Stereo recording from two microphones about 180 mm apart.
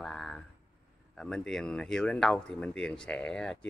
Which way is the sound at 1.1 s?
5° left (ahead or behind).